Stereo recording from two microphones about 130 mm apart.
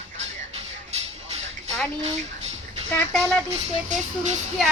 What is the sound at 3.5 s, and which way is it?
Speech, 60° right (ahead or behind).